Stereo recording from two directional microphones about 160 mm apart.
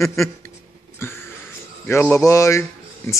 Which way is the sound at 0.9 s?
15° left (ahead or behind).